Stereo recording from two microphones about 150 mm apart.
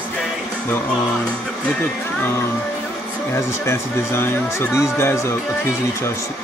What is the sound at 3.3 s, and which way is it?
Speech, 20° left (ahead or behind).